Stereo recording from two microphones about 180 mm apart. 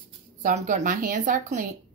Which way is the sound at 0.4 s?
45° right (ahead or behind).